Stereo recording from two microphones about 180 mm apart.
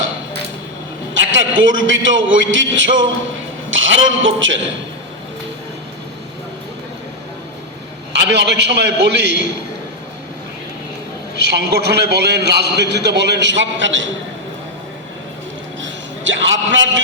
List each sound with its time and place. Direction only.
1.1 s a man's voice: 90° right
8.1 s a man's voice: 70° right (ahead or behind)
11.3 s a man's voice: 70° right (ahead or behind); by 14.1 s 90° right
15.8 s a sound: 90° right